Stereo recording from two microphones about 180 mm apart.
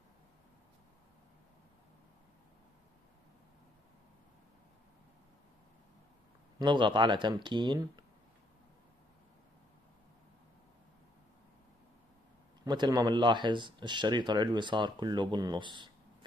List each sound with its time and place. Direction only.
6.6 s speech: 25° right (ahead or behind)
12.6 s speech: 25° right (ahead or behind)